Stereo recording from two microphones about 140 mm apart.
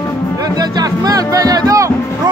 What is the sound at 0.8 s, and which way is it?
Speech, 25° right (ahead or behind).